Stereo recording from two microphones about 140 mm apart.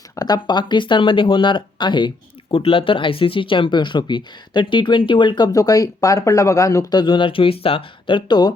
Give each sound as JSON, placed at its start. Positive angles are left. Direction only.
{"t": 0.2, "sound": "speech", "side_deg": 30}